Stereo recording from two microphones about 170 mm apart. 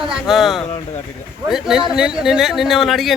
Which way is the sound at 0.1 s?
Centre (ahead or behind).